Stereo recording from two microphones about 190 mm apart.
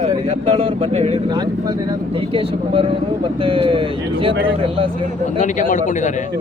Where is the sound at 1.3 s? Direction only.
20° right (ahead or behind).